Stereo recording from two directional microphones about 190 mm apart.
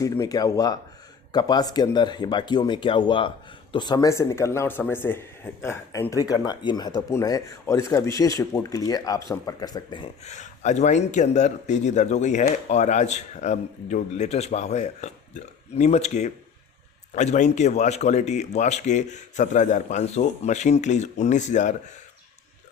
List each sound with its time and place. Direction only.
0.0 s speech: 20° left (ahead or behind)
10.2 s speech: 35° left (ahead or behind)